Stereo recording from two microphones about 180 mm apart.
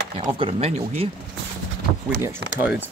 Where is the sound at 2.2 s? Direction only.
10° right (ahead or behind).